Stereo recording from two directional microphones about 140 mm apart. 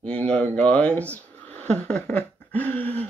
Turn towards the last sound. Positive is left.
turn(degrees=10)  # may be behind; listen again after turning